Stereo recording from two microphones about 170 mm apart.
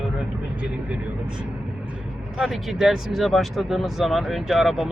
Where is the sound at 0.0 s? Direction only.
5° right (ahead or behind).